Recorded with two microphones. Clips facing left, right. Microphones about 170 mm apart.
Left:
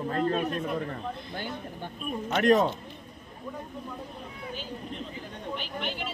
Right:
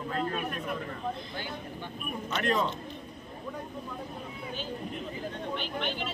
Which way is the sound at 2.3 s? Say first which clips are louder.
Left 7 dB; 50° left (ahead or behind).